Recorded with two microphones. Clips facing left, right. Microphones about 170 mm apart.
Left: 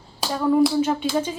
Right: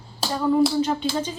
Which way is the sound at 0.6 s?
10° left (ahead or behind).